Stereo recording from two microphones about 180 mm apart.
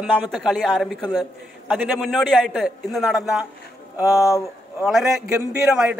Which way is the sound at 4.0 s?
20° left (ahead or behind).